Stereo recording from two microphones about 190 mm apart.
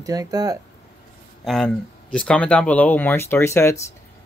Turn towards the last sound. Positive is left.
turn(degrees=15)  # may be behind; listen again after turning